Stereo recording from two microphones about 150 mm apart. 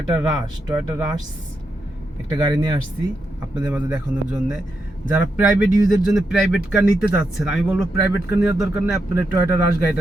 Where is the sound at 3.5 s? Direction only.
10° right (ahead or behind).